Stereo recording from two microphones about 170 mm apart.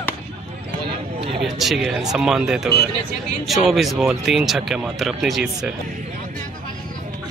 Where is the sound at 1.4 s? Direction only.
Centre (ahead or behind).